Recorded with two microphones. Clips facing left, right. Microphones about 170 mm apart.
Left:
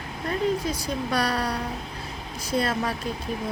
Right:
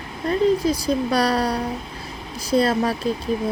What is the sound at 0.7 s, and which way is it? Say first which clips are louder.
Speech: right 7 dB; 35° right (ahead or behind).